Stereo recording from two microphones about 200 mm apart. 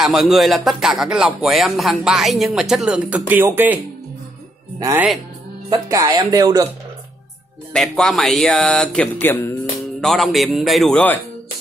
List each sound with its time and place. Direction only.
0.0 s speech: centre (ahead or behind); by 6.7 s 20° right (ahead or behind)
7.7 s speech: centre (ahead or behind)